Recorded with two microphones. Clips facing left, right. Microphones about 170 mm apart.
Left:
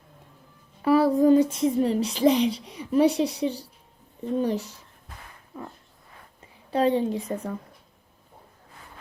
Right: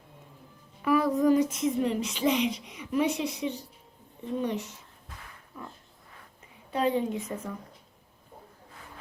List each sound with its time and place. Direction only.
0.8 s speech: 30° left (ahead or behind)
5.5 s a sound: 30° left (ahead or behind)
6.7 s speech: 30° left (ahead or behind)